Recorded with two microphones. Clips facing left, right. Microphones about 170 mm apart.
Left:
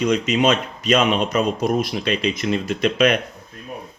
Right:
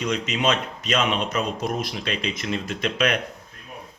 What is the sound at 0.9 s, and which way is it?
Speech, 45° left (ahead or behind).